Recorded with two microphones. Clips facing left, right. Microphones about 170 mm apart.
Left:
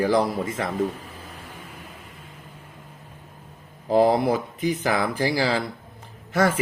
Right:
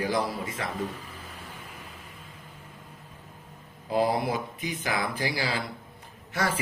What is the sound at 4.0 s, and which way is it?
Speech, 45° left (ahead or behind).